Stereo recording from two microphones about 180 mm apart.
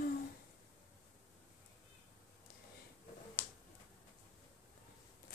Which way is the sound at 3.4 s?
10° left (ahead or behind).